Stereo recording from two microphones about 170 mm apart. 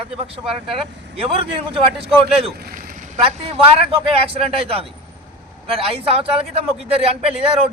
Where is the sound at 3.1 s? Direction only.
35° right (ahead or behind).